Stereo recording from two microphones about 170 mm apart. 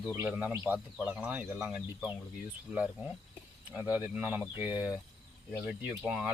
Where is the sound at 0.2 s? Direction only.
10° right (ahead or behind).